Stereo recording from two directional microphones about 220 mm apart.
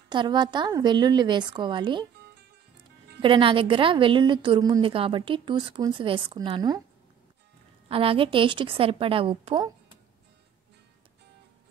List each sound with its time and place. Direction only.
0.1 s a woman's voice: 20° right (ahead or behind)
3.2 s a woman's voice: 25° right (ahead or behind)
7.9 s a woman's voice: 25° right (ahead or behind)